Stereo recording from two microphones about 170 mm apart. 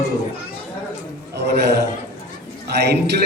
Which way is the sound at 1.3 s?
75° right (ahead or behind).